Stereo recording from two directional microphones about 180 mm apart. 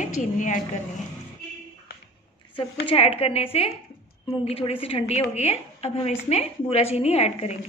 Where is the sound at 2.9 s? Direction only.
35° left (ahead or behind).